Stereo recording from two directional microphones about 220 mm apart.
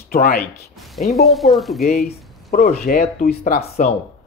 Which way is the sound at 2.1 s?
35° left (ahead or behind).